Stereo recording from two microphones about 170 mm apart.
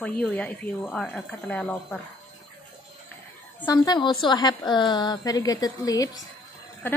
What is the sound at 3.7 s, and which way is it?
A woman's voice, 25° left (ahead or behind).